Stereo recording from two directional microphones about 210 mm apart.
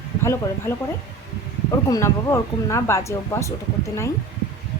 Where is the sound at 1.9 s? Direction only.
15° left (ahead or behind).